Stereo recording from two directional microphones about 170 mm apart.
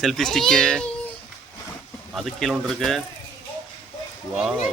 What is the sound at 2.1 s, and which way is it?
Speech, centre (ahead or behind).